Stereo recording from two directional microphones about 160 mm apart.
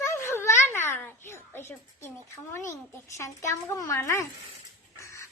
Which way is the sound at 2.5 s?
15° left (ahead or behind).